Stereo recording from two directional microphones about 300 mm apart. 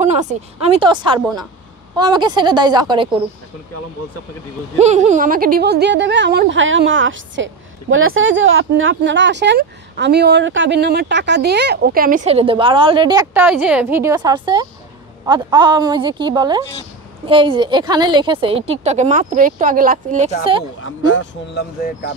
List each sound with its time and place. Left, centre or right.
0.0 s a woman's voice: right
4.7 s a woman's voice: right
20.8 s speech: left